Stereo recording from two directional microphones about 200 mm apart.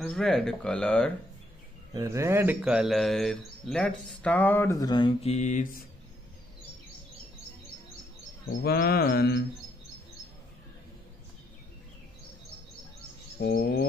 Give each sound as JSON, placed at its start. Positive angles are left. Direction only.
{"t": 0.0, "sound": "speech", "side_deg": 0}
{"t": 2.0, "sound": "speech", "side_deg": -15}
{"t": 8.6, "sound": "mantra", "side_deg": 50}
{"t": 13.4, "sound": "mantra", "side_deg": 50}